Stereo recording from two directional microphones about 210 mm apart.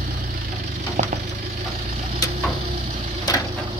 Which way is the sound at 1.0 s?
35° right (ahead or behind).